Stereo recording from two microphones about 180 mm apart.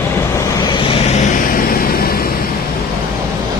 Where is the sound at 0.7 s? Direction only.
30° left (ahead or behind); by 2.2 s 55° left (ahead or behind).